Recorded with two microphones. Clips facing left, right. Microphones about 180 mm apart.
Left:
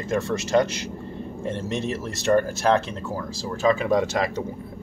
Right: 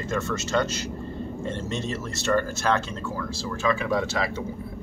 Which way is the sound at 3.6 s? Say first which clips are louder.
Left 5 dB; 45° left (ahead or behind).